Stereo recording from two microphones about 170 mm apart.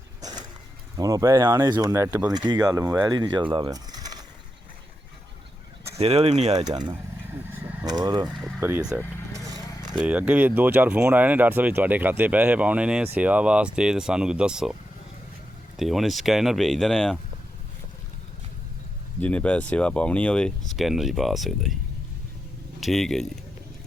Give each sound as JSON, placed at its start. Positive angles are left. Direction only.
{"t": 0.9, "sound": "speech", "side_deg": -20}
{"t": 3.5, "sound": "a sound", "side_deg": -25}
{"t": 6.0, "sound": "speech", "side_deg": -35}
{"t": 6.7, "sound": "speech", "side_deg": -25}
{"t": 8.4, "sound": "speech", "side_deg": 0}
{"t": 15.8, "sound": "speech", "side_deg": 0}
{"t": 19.2, "sound": "speech", "side_deg": 5}
{"t": 22.8, "sound": "speech", "side_deg": 0}